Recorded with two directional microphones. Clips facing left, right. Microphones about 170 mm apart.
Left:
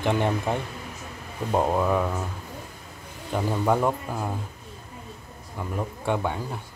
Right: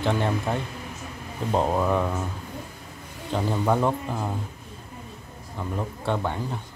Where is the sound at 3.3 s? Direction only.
5° left (ahead or behind).